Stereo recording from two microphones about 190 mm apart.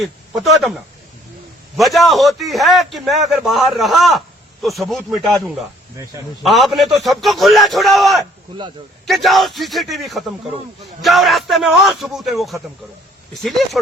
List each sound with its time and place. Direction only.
0.0 s a man's voice: centre (ahead or behind)
6.4 s a man's voice: centre (ahead or behind)